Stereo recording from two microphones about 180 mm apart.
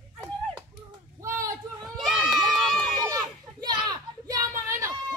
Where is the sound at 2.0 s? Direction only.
Centre (ahead or behind).